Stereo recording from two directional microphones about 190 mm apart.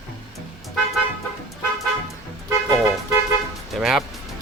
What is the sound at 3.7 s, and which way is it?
Speech, centre (ahead or behind).